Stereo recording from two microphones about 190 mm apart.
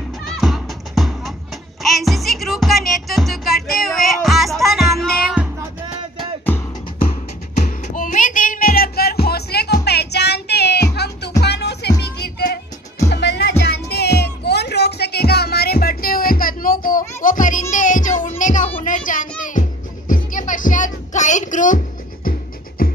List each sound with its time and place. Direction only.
0.4 s music: centre (ahead or behind)
6.1 s music: 10° left (ahead or behind)
7.5 s music: 40° left (ahead or behind)
20.3 s a sound: 45° left (ahead or behind)
22.8 s music: 50° left (ahead or behind)